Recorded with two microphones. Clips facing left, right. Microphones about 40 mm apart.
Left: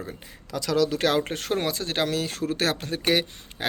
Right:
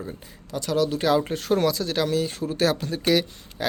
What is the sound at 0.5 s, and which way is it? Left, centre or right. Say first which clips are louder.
Speech: even; left.